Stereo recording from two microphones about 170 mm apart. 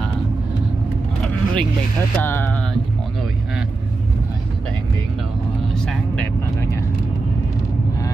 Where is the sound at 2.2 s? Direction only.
15° left (ahead or behind).